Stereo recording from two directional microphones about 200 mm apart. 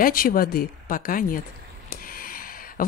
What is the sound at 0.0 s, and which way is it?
Speech, 45° left (ahead or behind).